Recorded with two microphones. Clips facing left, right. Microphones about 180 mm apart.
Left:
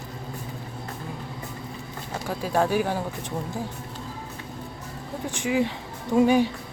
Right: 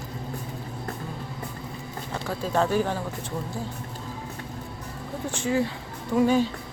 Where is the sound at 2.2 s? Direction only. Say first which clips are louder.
Left 1 dB; 10° left (ahead or behind).